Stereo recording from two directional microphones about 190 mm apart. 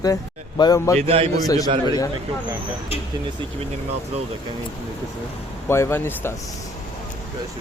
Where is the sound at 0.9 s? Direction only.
30° right (ahead or behind).